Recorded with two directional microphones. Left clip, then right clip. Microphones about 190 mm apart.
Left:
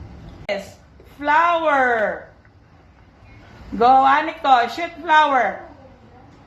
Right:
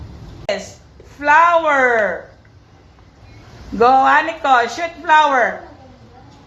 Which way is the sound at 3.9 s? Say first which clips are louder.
Right 2 dB; 20° right (ahead or behind).